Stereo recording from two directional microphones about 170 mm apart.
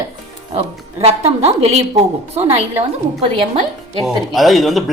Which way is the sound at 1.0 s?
35° right (ahead or behind).